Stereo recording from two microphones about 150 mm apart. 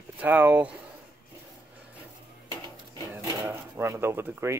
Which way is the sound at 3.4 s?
15° right (ahead or behind).